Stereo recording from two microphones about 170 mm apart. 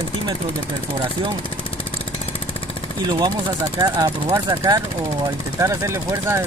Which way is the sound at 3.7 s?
20° right (ahead or behind).